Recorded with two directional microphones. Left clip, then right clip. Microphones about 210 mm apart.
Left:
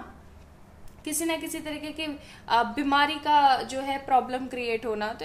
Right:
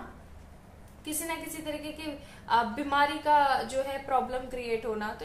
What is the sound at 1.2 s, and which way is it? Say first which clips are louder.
A woman's voice: left 6 dB; 50° left (ahead or behind).